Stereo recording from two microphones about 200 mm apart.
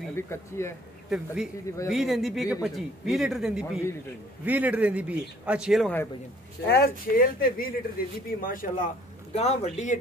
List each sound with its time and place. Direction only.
0.3 s speech: 15° left (ahead or behind)
1.1 s a man's voice: 5° right (ahead or behind)
6.6 s a man's voice: 50° left (ahead or behind); by 9.9 s 35° left (ahead or behind)